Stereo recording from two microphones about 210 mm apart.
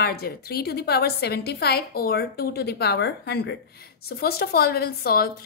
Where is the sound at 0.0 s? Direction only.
50° left (ahead or behind).